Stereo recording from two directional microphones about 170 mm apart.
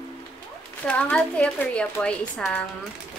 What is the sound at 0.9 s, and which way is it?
A woman's voice, 10° left (ahead or behind).